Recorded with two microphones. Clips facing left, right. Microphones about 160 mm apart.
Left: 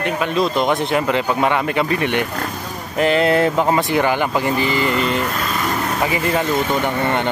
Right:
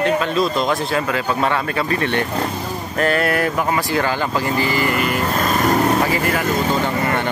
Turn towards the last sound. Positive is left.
turn(degrees=20)  # may be behind; listen again after turning